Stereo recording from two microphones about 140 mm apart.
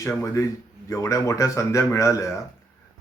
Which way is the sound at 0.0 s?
20° left (ahead or behind).